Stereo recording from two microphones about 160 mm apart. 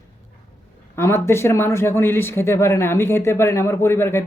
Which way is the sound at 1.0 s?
15° left (ahead or behind).